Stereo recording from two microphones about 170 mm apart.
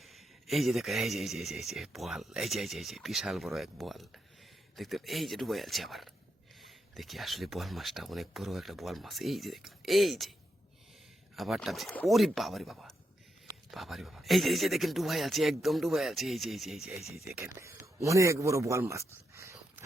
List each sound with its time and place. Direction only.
0.0 s speech: centre (ahead or behind)
11.3 s speech: centre (ahead or behind)
17.6 s speech: 15° right (ahead or behind)